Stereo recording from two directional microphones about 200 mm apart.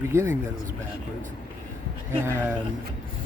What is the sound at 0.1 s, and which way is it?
Speech, 15° right (ahead or behind).